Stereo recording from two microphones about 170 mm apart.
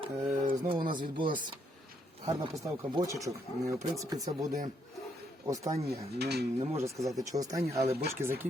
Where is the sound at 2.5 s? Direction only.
20° right (ahead or behind).